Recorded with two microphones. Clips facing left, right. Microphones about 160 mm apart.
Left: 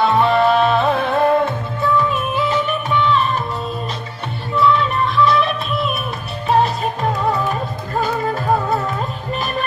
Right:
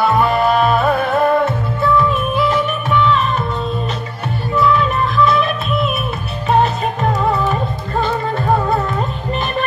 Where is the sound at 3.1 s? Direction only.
35° left (ahead or behind).